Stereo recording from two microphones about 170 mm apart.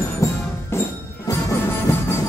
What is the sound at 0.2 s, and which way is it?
Music, 15° left (ahead or behind).